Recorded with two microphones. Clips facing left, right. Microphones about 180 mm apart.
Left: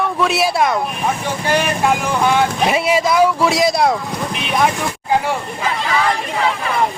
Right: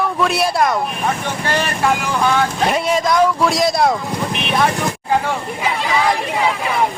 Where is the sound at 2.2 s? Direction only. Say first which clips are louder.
Left 1 dB; 15° left (ahead or behind).